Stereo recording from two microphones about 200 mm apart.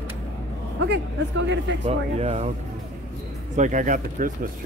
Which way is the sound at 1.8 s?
30° right (ahead or behind).